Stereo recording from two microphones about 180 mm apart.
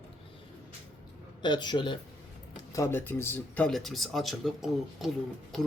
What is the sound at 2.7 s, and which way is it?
Speech, 15° left (ahead or behind).